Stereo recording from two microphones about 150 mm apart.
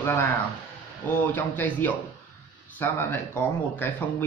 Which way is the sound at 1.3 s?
10° left (ahead or behind).